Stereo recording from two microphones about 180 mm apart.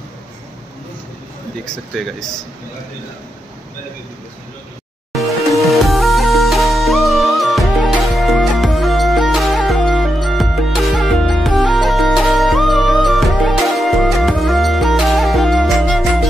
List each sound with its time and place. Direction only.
2.0 s speech: centre (ahead or behind)
5.1 s music: centre (ahead or behind)